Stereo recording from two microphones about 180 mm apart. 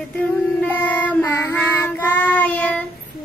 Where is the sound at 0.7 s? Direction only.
10° left (ahead or behind).